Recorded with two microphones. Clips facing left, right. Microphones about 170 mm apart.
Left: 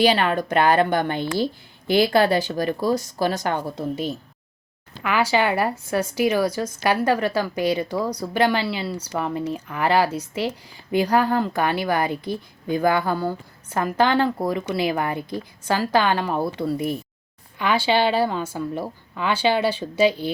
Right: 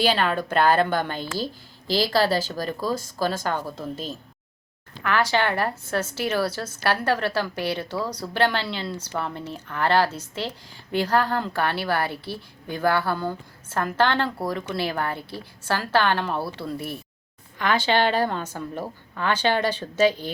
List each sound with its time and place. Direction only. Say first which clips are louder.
0.0 s a woman's voice: left 3 dB; 10° left (ahead or behind)
2.6 s a woman's voice: left 5 dB; 15° left (ahead or behind)